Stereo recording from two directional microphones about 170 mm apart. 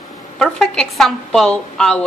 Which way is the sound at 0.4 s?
5° left (ahead or behind).